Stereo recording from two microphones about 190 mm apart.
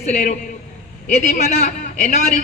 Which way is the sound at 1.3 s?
35° left (ahead or behind).